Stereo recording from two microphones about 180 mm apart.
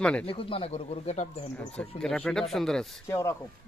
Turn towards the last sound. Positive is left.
turn(degrees=15)  # may be behind; listen again after turning